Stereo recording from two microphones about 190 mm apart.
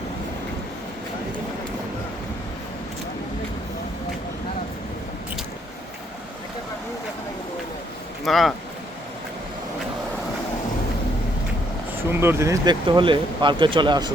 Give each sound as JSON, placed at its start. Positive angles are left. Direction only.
{"t": 8.2, "sound": "speech", "side_deg": 0}
{"t": 12.2, "sound": "speech", "side_deg": -15}